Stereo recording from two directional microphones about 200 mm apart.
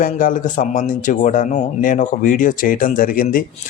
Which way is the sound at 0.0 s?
40° left (ahead or behind).